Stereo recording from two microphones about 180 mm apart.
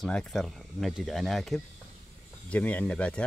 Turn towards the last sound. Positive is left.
turn(degrees=5)  # may be behind; listen again after turning